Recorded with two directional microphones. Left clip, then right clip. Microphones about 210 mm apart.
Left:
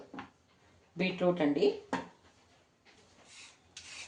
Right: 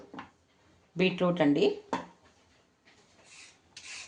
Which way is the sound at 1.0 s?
50° right (ahead or behind).